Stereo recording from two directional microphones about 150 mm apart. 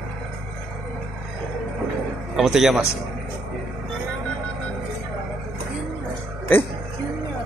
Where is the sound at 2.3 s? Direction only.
5° right (ahead or behind).